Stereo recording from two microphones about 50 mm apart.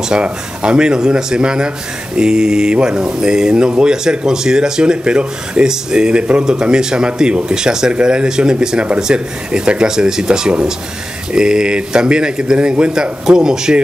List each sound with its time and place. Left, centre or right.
0.1 s speech: centre